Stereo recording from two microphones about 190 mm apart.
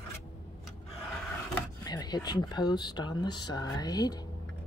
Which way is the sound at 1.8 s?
20° left (ahead or behind).